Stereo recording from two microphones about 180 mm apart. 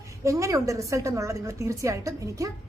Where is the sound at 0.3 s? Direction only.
15° right (ahead or behind).